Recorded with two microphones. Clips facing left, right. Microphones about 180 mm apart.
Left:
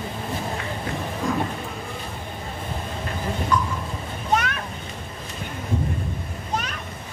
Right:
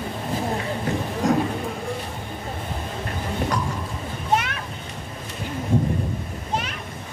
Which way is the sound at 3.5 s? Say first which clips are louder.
Left 6 dB; 90° right.